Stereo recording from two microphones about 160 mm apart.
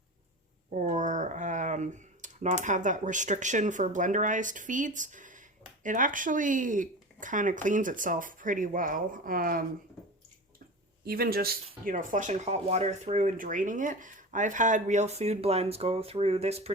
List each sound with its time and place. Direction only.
0.7 s speech: 50° right (ahead or behind)
11.0 s speech: 70° right (ahead or behind)
11.9 s speech: 55° right (ahead or behind)